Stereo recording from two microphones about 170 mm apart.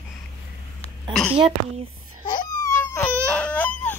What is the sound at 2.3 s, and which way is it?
Wail, 20° left (ahead or behind).